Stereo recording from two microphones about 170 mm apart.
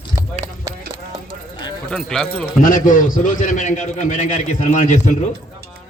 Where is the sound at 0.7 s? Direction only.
20° right (ahead or behind).